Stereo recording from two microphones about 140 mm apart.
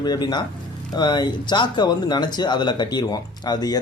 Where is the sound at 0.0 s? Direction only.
30° left (ahead or behind).